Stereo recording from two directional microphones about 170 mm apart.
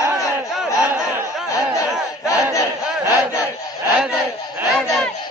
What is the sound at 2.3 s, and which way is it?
Battle cry, 20° left (ahead or behind).